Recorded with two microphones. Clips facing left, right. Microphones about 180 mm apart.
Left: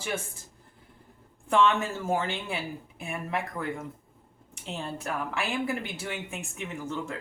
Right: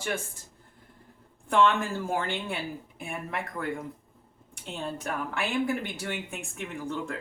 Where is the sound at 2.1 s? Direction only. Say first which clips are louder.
Left 1 dB; centre (ahead or behind).